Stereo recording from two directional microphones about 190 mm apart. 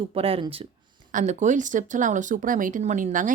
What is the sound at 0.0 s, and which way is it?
Speech, 30° right (ahead or behind).